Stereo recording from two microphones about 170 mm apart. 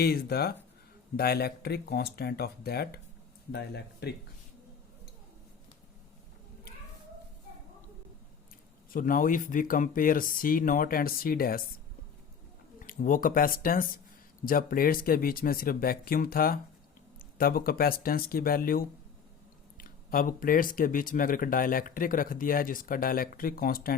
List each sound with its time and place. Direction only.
0.0 s speech: 65° left (ahead or behind)
8.9 s speech: 55° left (ahead or behind)
12.8 s speech: 55° left (ahead or behind)